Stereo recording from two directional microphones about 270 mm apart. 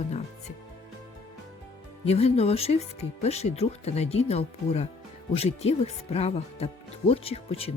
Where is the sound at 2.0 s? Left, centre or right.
Left.